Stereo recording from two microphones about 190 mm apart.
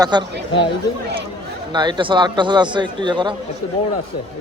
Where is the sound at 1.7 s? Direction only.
25° right (ahead or behind).